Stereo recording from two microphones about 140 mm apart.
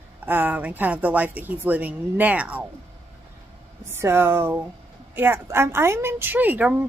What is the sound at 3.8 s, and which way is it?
A woman's voice, 15° right (ahead or behind).